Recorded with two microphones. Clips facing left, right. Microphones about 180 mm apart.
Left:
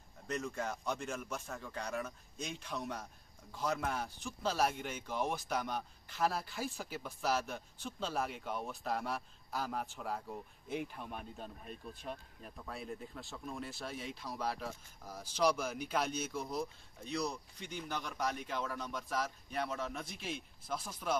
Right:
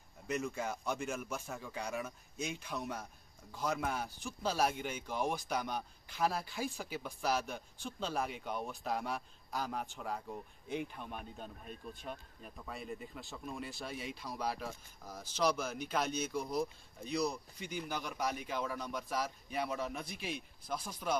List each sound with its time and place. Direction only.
0.3 s speech: 5° right (ahead or behind)